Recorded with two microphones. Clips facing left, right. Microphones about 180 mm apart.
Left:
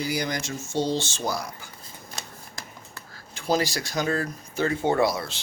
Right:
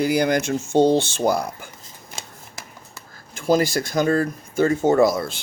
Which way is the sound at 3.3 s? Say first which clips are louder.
Right 6 dB; 50° right (ahead or behind).